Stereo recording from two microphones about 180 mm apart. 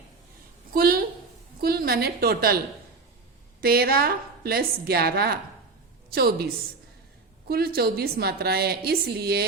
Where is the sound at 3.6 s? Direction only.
55° right (ahead or behind).